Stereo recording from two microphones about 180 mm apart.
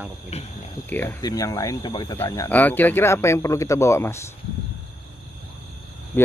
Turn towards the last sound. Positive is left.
turn(degrees=10)  # may be behind; listen again after turning